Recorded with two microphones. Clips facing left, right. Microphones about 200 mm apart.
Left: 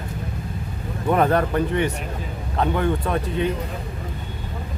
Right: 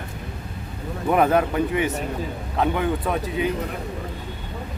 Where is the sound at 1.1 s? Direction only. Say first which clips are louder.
Even; 5° right (ahead or behind).